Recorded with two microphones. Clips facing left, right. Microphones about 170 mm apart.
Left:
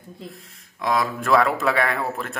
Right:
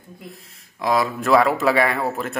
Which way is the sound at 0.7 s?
5° right (ahead or behind).